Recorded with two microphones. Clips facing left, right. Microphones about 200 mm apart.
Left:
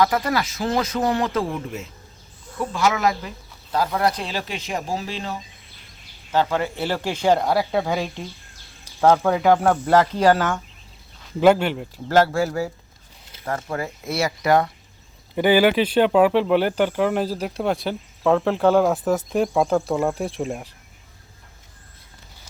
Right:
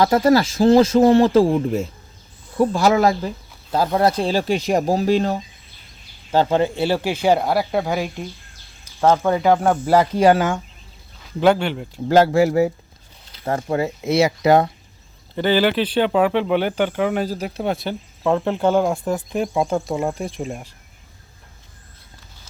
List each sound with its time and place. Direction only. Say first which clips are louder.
0.0 s speech: right 6 dB; 30° right (ahead or behind)
6.3 s speech: right 4 dB; 30° right (ahead or behind)
6.7 s speech: right 5 dB; 15° right (ahead or behind)
9.1 s speech: right 1 dB; centre (ahead or behind)
11.3 s speech: left 1 dB; 5° left (ahead or behind)
12.0 s speech: right 4 dB; 20° right (ahead or behind)
15.4 s speech: left 1 dB; 15° left (ahead or behind)